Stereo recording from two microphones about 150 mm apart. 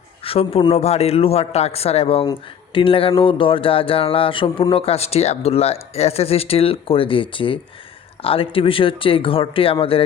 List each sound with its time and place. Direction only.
0.3 s speech: 40° left (ahead or behind)